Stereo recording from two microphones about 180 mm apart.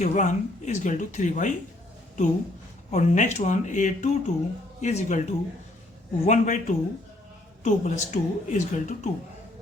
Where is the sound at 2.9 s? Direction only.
40° left (ahead or behind).